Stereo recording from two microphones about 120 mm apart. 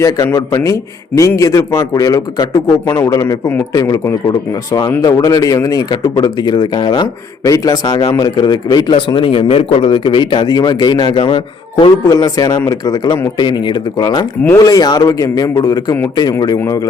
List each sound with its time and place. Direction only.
0.0 s a man's voice: 25° left (ahead or behind); by 12.1 s 45° left (ahead or behind)
12.1 s a man's voice: 30° left (ahead or behind)